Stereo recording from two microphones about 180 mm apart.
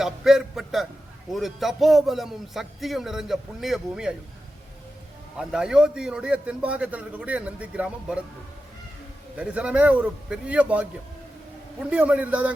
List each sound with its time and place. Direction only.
0.0 s a man's voice: centre (ahead or behind)
5.4 s a man's voice: 5° right (ahead or behind)
9.3 s a man's voice: 5° right (ahead or behind)